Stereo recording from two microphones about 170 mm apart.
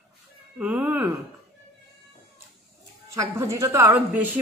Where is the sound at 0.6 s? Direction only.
10° right (ahead or behind).